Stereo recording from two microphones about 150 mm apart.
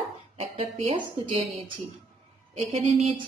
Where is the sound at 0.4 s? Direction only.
40° right (ahead or behind).